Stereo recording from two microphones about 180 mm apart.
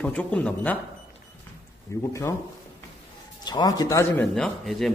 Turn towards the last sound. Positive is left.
turn(degrees=0)  # may be behind; listen again after turning